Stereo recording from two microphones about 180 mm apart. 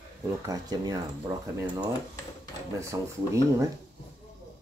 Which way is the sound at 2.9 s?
15° right (ahead or behind).